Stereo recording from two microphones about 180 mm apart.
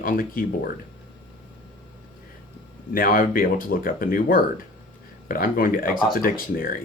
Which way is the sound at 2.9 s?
50° left (ahead or behind).